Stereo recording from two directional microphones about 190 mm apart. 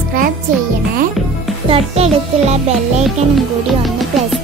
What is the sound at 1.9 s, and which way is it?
Music, 35° right (ahead or behind).